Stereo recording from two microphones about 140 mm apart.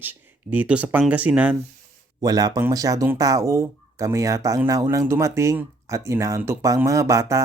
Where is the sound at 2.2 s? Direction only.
25° right (ahead or behind).